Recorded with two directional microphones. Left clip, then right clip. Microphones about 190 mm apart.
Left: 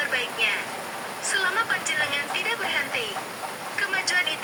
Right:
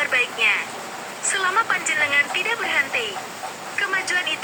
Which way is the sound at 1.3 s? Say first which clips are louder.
Right 4 dB; 25° right (ahead or behind).